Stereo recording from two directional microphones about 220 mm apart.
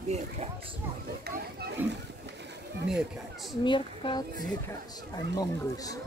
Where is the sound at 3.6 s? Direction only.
20° left (ahead or behind).